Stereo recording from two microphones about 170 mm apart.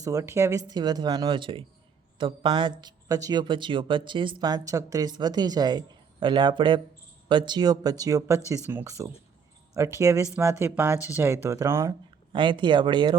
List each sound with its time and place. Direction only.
0.0 s speech: 20° right (ahead or behind)
12.3 s speech: 30° right (ahead or behind)